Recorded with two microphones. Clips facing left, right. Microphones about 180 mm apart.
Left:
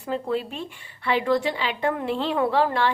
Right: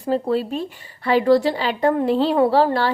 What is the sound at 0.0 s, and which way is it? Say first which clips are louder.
A woman's voice: right 6 dB; 35° right (ahead or behind).